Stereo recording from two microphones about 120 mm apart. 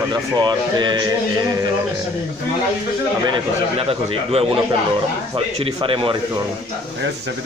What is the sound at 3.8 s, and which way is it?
Speech, 50° right (ahead or behind).